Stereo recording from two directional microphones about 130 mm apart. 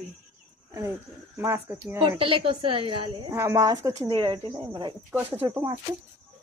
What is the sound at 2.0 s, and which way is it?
Speech, 40° right (ahead or behind).